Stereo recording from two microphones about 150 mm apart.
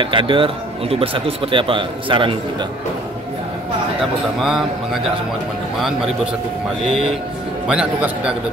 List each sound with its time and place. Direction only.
0.0 s a man's voice: 35° right (ahead or behind)
4.4 s a man's voice: centre (ahead or behind)
5.8 s a man's voice: centre (ahead or behind)
7.6 s a man's voice: 5° right (ahead or behind)